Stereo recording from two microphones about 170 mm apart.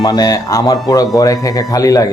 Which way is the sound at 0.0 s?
20° left (ahead or behind).